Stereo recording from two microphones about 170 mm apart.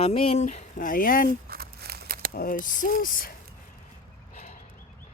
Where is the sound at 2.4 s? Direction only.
55° left (ahead or behind).